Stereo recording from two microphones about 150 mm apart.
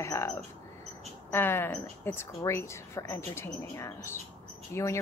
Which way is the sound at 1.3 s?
15° left (ahead or behind).